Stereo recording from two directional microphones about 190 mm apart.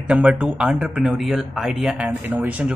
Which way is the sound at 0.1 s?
5° right (ahead or behind).